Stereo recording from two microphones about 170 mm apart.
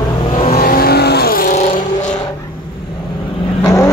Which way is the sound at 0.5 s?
60° left (ahead or behind).